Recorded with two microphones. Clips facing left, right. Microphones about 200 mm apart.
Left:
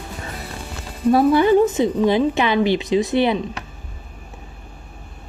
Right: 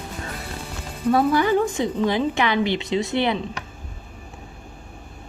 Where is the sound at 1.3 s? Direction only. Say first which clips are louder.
Left 5 dB; 20° left (ahead or behind).